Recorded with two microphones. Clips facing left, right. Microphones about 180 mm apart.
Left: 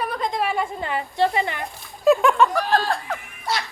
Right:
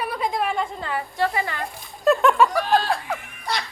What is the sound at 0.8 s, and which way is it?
Speech, 20° left (ahead or behind).